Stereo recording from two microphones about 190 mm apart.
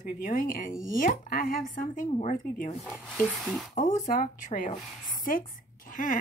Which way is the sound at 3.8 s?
45° left (ahead or behind).